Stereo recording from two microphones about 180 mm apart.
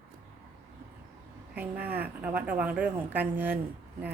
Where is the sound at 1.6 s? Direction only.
10° right (ahead or behind).